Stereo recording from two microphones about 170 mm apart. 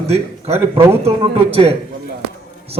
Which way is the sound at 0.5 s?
15° right (ahead or behind).